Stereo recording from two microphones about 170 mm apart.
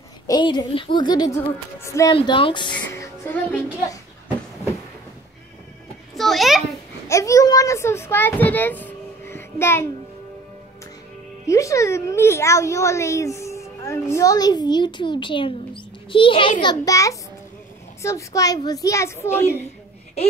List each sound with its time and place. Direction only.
0.3 s a woman's voice: 25° left (ahead or behind)
2.1 s a woman's voice: 30° left (ahead or behind)
2.9 s speech: 15° left (ahead or behind)
6.1 s a sound: centre (ahead or behind)
7.1 s a child's voice: 20° left (ahead or behind)
11.4 s a child's voice: 20° left (ahead or behind)
16.6 s a woman's voice: 20° left (ahead or behind)